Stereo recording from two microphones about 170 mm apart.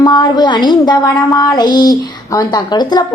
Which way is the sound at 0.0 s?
25° left (ahead or behind).